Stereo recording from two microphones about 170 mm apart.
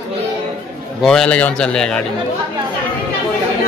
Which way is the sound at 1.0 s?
5° left (ahead or behind).